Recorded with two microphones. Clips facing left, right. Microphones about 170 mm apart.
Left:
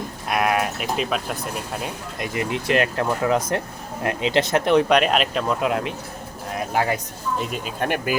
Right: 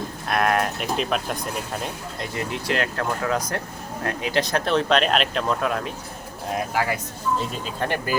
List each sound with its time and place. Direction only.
0.3 s speech: 10° left (ahead or behind)
2.1 s speech: 15° left (ahead or behind)
5.5 s speech: 20° left (ahead or behind)